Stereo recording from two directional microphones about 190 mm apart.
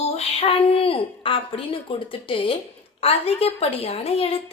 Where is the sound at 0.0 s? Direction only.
35° left (ahead or behind).